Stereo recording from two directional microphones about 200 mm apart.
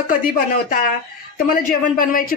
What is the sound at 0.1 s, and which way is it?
Speech, 45° left (ahead or behind).